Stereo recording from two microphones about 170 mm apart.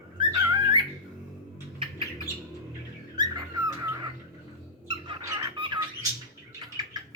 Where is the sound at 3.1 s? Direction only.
20° right (ahead or behind).